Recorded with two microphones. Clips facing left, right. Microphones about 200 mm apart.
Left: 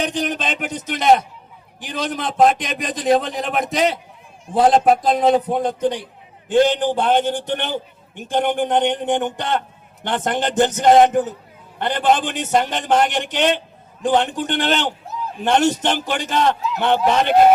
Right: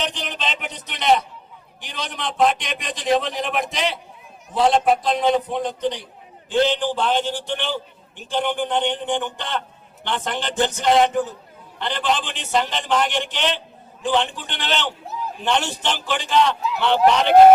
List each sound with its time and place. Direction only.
0.0 s a man's voice: 50° left (ahead or behind)
4.6 s a man's voice: 50° left (ahead or behind)